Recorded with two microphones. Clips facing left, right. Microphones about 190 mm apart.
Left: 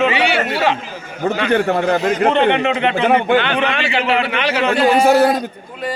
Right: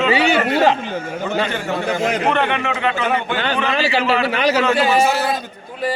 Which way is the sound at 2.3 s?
20° left (ahead or behind).